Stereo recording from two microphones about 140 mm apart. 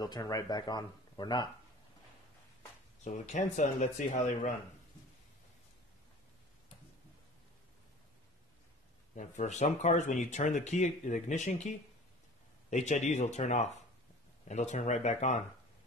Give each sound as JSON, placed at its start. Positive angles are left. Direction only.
{"t": 0.0, "sound": "speech", "side_deg": 25}
{"t": 3.0, "sound": "speech", "side_deg": 60}
{"t": 9.1, "sound": "speech", "side_deg": 60}